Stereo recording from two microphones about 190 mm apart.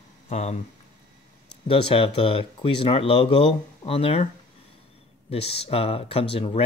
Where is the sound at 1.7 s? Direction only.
30° left (ahead or behind).